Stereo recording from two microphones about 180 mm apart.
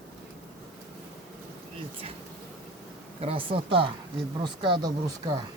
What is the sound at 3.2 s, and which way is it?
Speech, 30° right (ahead or behind).